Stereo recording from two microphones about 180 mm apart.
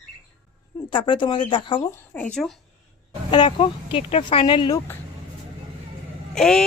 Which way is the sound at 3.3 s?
30° left (ahead or behind).